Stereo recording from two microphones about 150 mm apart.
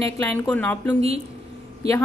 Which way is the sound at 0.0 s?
15° left (ahead or behind).